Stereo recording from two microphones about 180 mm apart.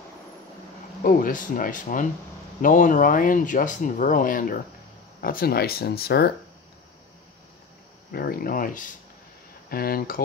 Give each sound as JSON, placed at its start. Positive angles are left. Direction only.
{"t": 1.0, "sound": "speech", "side_deg": 50}
{"t": 8.1, "sound": "speech", "side_deg": 60}